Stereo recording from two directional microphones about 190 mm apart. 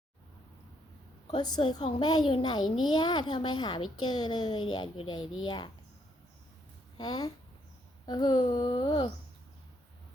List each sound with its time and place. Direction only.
1.4 s a child's voice: 20° left (ahead or behind)
6.9 s a child's voice: 20° left (ahead or behind)